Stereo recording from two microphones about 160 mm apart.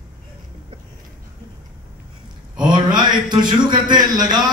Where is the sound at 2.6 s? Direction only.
25° right (ahead or behind).